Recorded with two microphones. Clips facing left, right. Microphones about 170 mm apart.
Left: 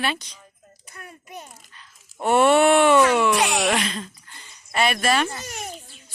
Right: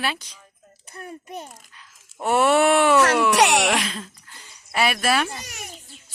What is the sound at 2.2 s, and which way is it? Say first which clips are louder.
Speech: left 2 dB; 5° right (ahead or behind).